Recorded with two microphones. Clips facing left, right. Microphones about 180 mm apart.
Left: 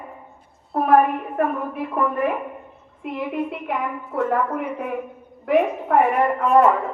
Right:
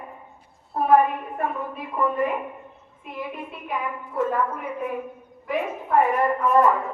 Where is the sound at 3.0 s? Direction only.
70° left (ahead or behind).